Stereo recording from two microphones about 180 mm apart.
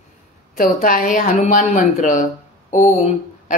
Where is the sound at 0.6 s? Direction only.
50° left (ahead or behind).